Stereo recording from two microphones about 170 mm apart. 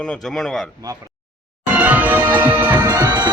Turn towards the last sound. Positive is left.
turn(degrees=-25)  # may be behind; listen again after turning